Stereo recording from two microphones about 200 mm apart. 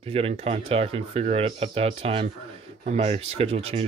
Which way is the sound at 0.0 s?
30° right (ahead or behind).